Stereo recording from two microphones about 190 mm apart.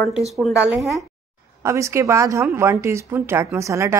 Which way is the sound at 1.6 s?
15° right (ahead or behind).